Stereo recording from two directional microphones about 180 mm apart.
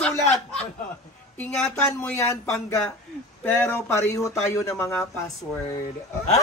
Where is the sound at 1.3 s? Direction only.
10° left (ahead or behind).